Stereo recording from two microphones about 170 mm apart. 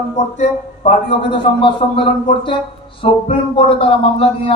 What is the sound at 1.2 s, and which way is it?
A man's voice, 30° left (ahead or behind).